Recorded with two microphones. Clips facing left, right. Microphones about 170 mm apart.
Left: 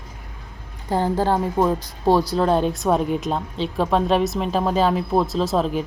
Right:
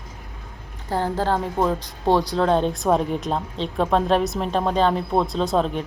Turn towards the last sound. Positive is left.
turn(degrees=0)  # may be behind; listen again after turning